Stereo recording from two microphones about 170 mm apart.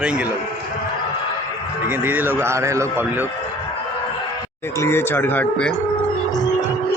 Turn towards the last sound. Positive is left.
turn(degrees=10)  # may be behind; listen again after turning